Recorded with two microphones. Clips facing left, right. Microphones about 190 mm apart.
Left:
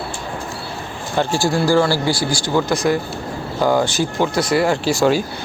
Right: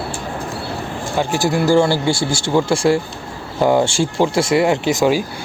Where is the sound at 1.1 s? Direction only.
20° right (ahead or behind).